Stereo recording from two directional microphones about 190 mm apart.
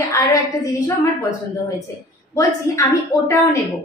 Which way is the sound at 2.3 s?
15° left (ahead or behind).